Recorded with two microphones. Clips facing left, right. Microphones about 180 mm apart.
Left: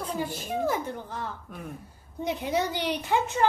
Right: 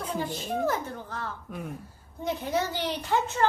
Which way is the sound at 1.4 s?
Centre (ahead or behind).